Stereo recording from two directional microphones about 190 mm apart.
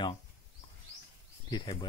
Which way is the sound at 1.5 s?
25° left (ahead or behind).